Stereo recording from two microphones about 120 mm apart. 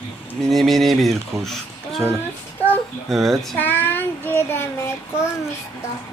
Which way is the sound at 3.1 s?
Centre (ahead or behind).